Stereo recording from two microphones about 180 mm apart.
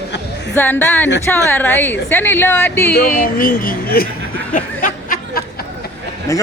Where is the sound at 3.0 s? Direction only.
50° left (ahead or behind).